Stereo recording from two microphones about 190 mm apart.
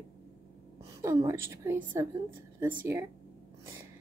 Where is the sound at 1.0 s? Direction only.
15° right (ahead or behind).